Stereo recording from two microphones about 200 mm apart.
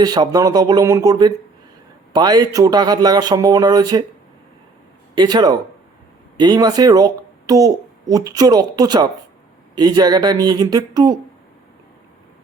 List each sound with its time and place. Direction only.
0.0 s speech: 20° right (ahead or behind)
5.1 s speech: 20° right (ahead or behind)